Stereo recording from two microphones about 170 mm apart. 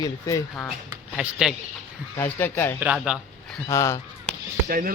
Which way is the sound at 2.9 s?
5° right (ahead or behind).